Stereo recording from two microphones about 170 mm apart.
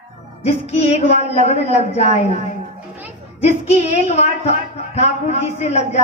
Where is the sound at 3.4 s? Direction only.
40° left (ahead or behind).